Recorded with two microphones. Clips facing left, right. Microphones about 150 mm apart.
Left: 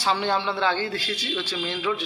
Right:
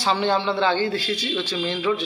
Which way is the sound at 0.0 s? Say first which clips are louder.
Right 3 dB; 5° left (ahead or behind).